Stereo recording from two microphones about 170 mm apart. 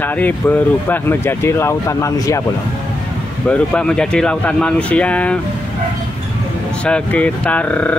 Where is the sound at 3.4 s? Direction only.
5° left (ahead or behind).